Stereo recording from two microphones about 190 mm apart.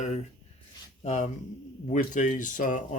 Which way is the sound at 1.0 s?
35° left (ahead or behind).